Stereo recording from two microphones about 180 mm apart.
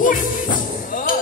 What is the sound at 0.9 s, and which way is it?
Music, 50° left (ahead or behind).